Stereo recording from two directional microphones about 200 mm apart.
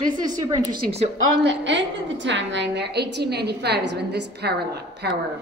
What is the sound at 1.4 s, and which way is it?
A woman's voice, 65° right (ahead or behind).